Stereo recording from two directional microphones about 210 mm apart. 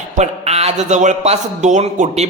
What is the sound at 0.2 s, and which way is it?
A man's voice, 30° right (ahead or behind).